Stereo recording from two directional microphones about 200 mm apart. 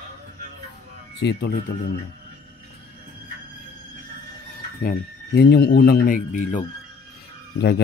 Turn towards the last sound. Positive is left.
turn(degrees=55)  # may be behind; listen again after turning